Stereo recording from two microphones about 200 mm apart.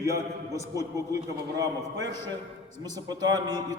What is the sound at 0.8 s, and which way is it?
A man's voice, 15° right (ahead or behind).